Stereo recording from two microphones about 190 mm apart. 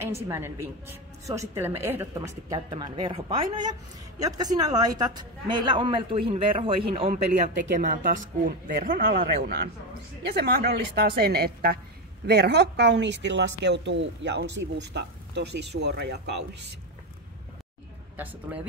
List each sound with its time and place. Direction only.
0.3 s a woman's voice: 15° right (ahead or behind); by 7.1 s 30° right (ahead or behind)
7.8 s speech: 45° right (ahead or behind); by 16.3 s 60° right (ahead or behind)
18.1 s a woman's voice: 10° right (ahead or behind)